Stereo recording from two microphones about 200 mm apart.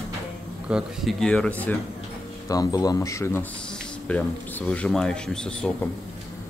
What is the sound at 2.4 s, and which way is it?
Speech, 20° left (ahead or behind).